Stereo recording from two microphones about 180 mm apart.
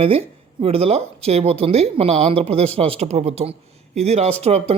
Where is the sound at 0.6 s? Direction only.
35° right (ahead or behind).